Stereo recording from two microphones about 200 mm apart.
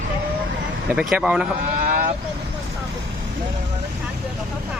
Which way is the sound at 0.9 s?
5° right (ahead or behind).